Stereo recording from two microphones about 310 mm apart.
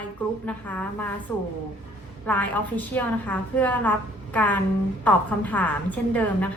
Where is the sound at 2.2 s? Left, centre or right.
Centre.